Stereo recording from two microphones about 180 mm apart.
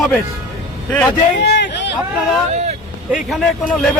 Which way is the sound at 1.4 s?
70° left (ahead or behind).